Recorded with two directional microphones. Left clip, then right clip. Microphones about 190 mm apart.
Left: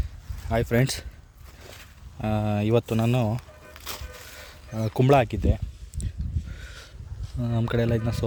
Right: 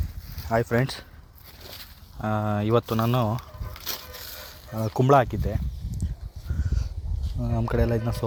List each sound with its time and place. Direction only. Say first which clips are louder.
0.4 s speech: right 2 dB; 15° left (ahead or behind)
0.7 s speech: left 1 dB; 35° left (ahead or behind)
2.1 s speech: right 1 dB; 25° left (ahead or behind)
3.8 s a sound: right 3 dB; 35° right (ahead or behind)
4.8 s speech: right 1 dB; 25° left (ahead or behind)
7.3 s speech: even; 35° left (ahead or behind)
7.6 s speech: even; 20° left (ahead or behind)